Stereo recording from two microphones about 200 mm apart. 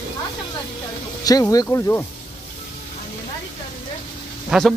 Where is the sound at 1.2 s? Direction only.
20° left (ahead or behind).